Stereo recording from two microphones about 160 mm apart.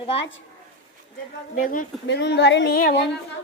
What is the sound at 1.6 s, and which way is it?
A woman's voice, 60° left (ahead or behind).